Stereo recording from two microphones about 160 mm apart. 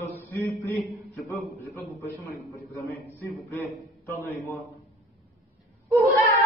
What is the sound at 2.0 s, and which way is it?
A man's voice, 20° left (ahead or behind).